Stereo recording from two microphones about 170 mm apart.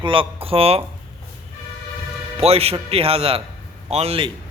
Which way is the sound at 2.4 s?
35° right (ahead or behind).